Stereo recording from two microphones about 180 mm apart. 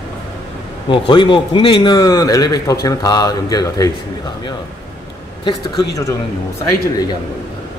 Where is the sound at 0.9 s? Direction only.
25° left (ahead or behind).